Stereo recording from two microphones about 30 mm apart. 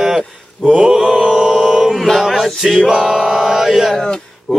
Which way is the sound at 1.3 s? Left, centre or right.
Centre.